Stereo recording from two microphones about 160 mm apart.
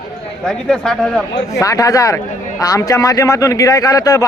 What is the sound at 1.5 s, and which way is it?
A man's voice, 20° left (ahead or behind).